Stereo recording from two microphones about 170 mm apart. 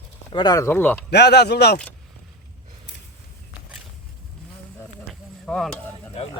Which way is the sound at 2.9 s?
90° left.